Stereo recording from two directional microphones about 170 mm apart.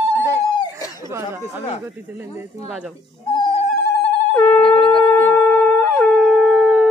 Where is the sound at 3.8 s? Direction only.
75° left (ahead or behind).